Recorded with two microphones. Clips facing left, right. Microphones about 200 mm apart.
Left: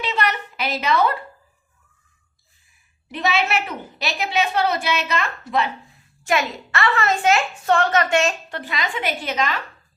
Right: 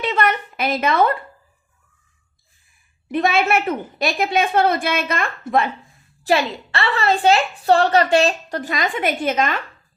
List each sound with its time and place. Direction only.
0.0 s a woman's voice: 50° right (ahead or behind)
3.1 s a woman's voice: 50° right (ahead or behind)
6.2 s a woman's voice: 30° right (ahead or behind); by 9.6 s 50° right (ahead or behind)